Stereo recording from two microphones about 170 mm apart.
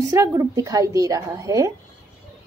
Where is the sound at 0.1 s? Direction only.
20° right (ahead or behind).